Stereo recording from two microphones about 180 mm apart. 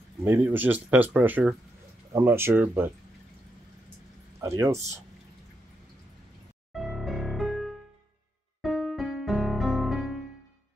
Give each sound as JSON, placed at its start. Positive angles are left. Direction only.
{"t": 0.2, "sound": "speech", "side_deg": -15}
{"t": 4.4, "sound": "speech", "side_deg": -15}
{"t": 6.7, "sound": "music", "side_deg": 0}